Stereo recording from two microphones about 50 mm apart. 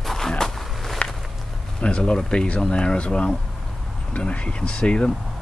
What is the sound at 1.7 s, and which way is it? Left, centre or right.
Speech, left.